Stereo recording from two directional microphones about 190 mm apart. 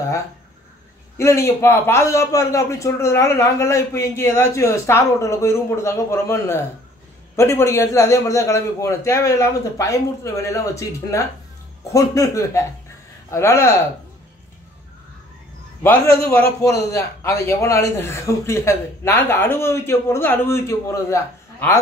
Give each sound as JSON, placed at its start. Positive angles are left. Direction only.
{"t": 1.1, "sound": "a man's voice", "side_deg": 15}
{"t": 15.8, "sound": "a man's voice", "side_deg": 10}